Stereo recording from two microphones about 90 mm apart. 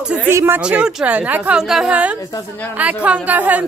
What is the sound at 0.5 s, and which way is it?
A woman's voice, 15° right (ahead or behind).